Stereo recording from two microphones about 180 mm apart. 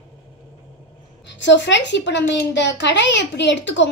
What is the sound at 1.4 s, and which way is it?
A woman's voice, 85° left.